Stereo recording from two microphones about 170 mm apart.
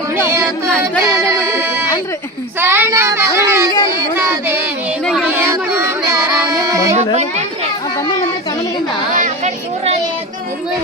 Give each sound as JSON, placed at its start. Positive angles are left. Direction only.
{"t": 2.6, "sound": "child singing", "side_deg": -15}
{"t": 4.2, "sound": "speech", "side_deg": -15}
{"t": 5.0, "sound": "child singing", "side_deg": -5}
{"t": 9.1, "sound": "a sound", "side_deg": -45}